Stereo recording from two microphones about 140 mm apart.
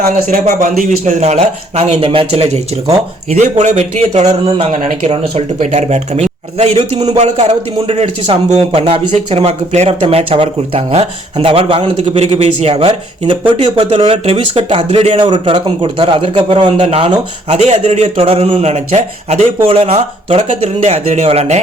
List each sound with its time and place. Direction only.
0.4 s a man's voice: 65° right (ahead or behind); by 5.6 s 40° right (ahead or behind)
5.7 s a man's voice: 55° right (ahead or behind)
11.9 s a man's voice: 50° right (ahead or behind)
15.2 s a man's voice: 35° right (ahead or behind)